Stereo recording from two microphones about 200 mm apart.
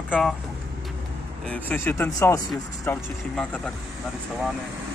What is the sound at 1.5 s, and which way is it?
Speech, 10° left (ahead or behind).